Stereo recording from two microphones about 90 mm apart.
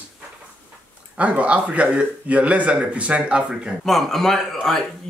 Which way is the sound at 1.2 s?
15° right (ahead or behind).